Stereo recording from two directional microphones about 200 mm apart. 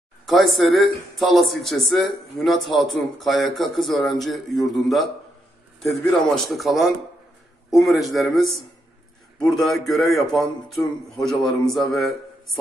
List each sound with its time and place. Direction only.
0.3 s speech: centre (ahead or behind)